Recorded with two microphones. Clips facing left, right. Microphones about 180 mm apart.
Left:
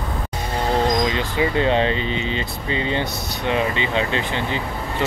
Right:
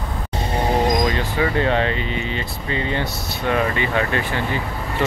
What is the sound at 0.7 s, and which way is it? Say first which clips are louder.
Speech: even; 15° right (ahead or behind).